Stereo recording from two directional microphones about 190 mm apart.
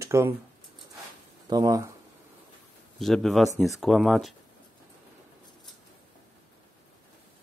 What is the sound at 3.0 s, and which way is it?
Speech, centre (ahead or behind).